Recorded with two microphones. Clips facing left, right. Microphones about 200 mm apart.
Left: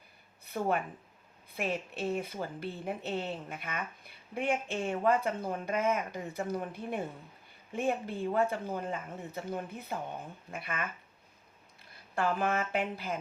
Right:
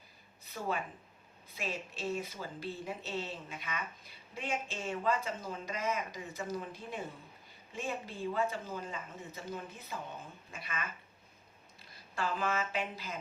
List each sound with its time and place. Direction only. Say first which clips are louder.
0.4 s a woman's voice: left 6 dB; 55° left (ahead or behind)
12.1 s a woman's voice: left 4 dB; 55° left (ahead or behind)